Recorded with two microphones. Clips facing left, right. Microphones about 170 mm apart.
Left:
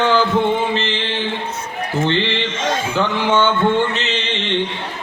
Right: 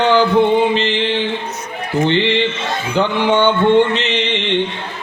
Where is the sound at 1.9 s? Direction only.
15° right (ahead or behind).